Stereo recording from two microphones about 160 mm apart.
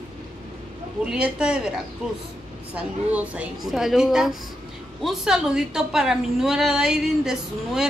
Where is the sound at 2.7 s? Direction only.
10° right (ahead or behind).